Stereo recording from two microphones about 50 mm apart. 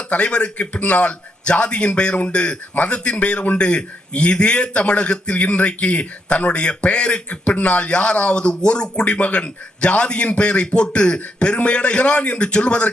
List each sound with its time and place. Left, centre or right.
0.1 s a man's voice: left